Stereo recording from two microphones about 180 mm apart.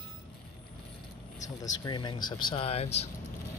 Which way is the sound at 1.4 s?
20° left (ahead or behind).